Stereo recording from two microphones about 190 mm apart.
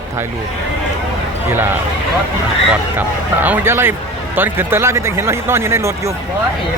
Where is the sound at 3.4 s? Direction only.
10° right (ahead or behind).